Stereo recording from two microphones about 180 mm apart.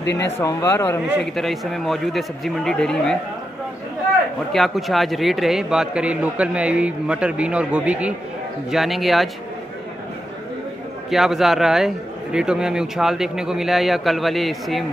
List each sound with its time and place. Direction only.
0.0 s speech: 75° left (ahead or behind)
0.4 s speech: 15° left (ahead or behind)
1.2 s a man's voice: centre (ahead or behind)
4.5 s a man's voice: centre (ahead or behind)
11.1 s a man's voice: centre (ahead or behind)